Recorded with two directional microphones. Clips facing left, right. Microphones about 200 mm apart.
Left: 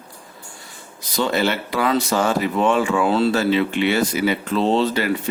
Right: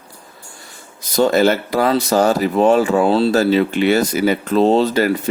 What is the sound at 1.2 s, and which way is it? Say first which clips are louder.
Speech: right 7 dB; 45° right (ahead or behind).